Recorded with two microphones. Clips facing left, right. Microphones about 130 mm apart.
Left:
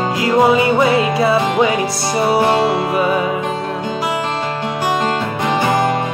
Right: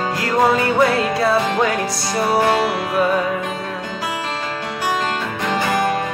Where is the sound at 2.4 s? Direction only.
25° left (ahead or behind).